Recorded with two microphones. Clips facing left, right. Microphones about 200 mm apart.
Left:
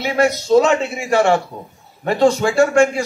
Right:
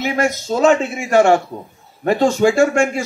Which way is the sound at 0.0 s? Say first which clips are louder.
Left 2 dB; 45° right (ahead or behind).